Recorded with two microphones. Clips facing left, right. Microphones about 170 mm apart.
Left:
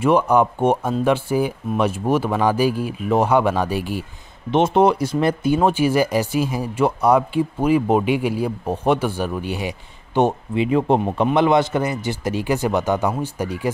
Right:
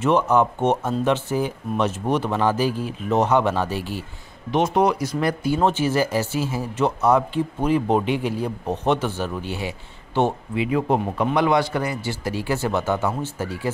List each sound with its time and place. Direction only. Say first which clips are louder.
0.0 s speech: left 2 dB; 10° left (ahead or behind)
4.5 s speech: left 4 dB; 25° left (ahead or behind)
5.6 s speech: left 2 dB; 10° left (ahead or behind)